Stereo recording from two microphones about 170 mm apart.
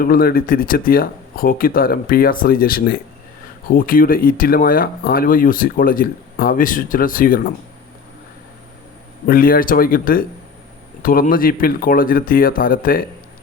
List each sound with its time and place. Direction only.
0.0 s speech: 60° left (ahead or behind)
9.2 s speech: 60° left (ahead or behind)